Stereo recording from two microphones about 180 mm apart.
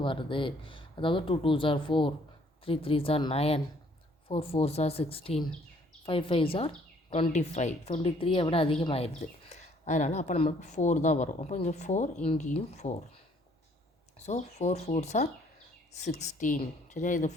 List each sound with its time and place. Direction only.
0.0 s a woman's voice: 30° left (ahead or behind)
14.2 s a woman's voice: 40° left (ahead or behind)